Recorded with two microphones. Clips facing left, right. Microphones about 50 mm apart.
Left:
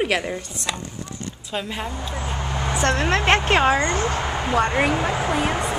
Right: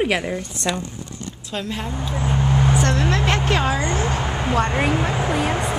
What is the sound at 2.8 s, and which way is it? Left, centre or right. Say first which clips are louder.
A woman's voice: left 1 dB; left.